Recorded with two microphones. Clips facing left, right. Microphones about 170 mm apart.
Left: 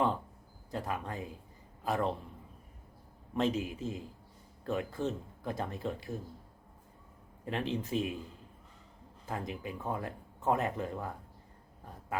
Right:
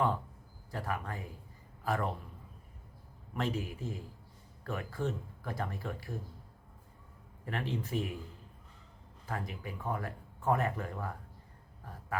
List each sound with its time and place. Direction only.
0.7 s a man's voice: 20° left (ahead or behind)
3.3 s speech: 20° left (ahead or behind)
7.4 s speech: 20° left (ahead or behind)
9.2 s speech: 20° left (ahead or behind)